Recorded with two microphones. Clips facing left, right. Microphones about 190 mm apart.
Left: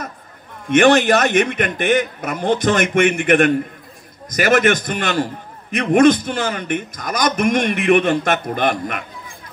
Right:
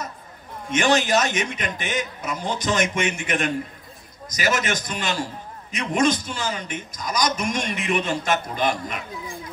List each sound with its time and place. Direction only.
0.7 s a man's voice: 60° left (ahead or behind)